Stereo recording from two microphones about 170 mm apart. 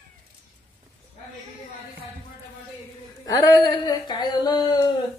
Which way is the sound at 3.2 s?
20° left (ahead or behind).